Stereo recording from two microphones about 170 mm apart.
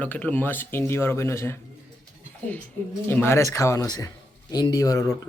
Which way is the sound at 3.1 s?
15° left (ahead or behind).